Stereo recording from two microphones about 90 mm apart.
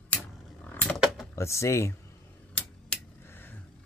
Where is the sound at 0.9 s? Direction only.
5° right (ahead or behind).